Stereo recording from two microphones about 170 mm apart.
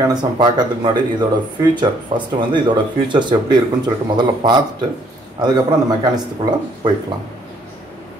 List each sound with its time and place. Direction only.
0.1 s speech: 25° right (ahead or behind)